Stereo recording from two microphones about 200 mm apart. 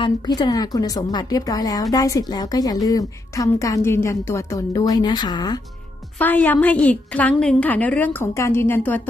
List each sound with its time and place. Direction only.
0.0 s a woman's voice: 20° left (ahead or behind)
6.1 s a woman's voice: 10° left (ahead or behind)